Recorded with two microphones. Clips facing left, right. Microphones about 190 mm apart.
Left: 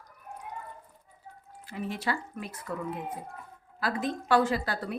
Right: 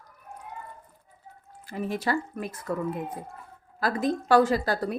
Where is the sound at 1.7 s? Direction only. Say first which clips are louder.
Right 5 dB; 45° right (ahead or behind).